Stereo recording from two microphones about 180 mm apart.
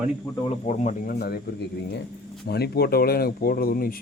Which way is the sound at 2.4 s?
65° left (ahead or behind).